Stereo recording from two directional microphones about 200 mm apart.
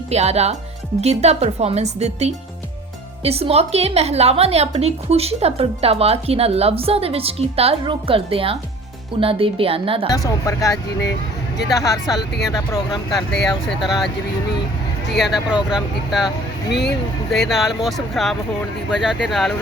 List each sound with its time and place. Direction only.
0.1 s a woman's voice: 30° right (ahead or behind)
10.1 s speech: 15° left (ahead or behind)
11.0 s speech: 55° left (ahead or behind)
11.7 s speech: 15° left (ahead or behind)
13.1 s speech: centre (ahead or behind)
15.2 s speech: centre (ahead or behind)
16.6 s speech: 55° left (ahead or behind)
17.5 s speech: centre (ahead or behind)